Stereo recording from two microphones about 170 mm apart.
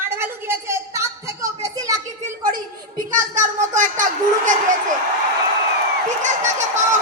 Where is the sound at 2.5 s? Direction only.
55° right (ahead or behind).